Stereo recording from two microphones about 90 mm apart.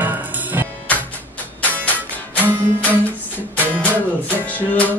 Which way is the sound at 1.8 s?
15° left (ahead or behind).